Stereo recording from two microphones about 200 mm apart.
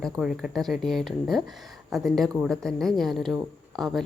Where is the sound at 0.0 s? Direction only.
5° right (ahead or behind).